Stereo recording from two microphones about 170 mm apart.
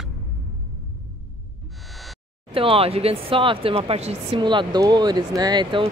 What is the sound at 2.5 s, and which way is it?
Speech, 30° right (ahead or behind).